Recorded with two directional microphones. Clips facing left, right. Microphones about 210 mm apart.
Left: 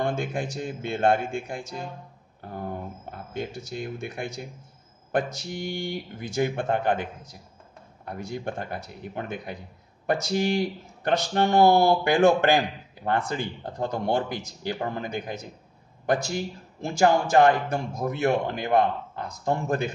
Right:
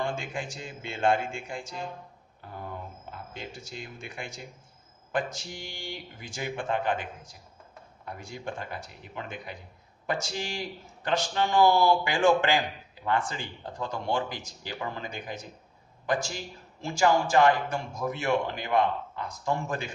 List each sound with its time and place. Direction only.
0.0 s a man's voice: 60° left (ahead or behind)
2.7 s a man's voice: 50° left (ahead or behind)
5.1 s a man's voice: 60° left (ahead or behind)
12.5 s a man's voice: 45° left (ahead or behind)